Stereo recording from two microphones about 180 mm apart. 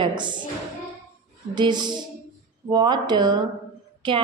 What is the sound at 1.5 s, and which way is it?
A woman's voice, 25° right (ahead or behind).